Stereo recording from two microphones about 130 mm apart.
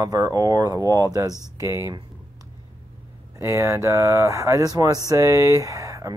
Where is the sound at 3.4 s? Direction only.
20° right (ahead or behind).